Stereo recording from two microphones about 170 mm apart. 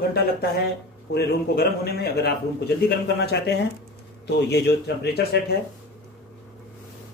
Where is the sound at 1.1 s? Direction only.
70° left (ahead or behind).